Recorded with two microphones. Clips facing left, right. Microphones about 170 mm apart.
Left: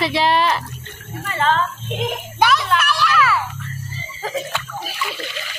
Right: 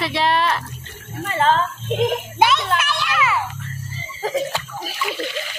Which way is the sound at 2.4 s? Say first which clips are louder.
Left 1 dB; 25° right (ahead or behind).